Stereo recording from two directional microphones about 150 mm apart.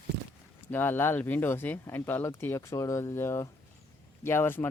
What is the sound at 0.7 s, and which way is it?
Speech, 15° left (ahead or behind).